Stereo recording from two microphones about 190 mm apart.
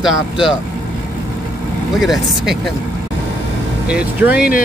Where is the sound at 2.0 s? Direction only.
Centre (ahead or behind).